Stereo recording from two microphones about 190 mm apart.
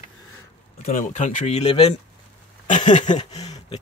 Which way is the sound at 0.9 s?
40° left (ahead or behind).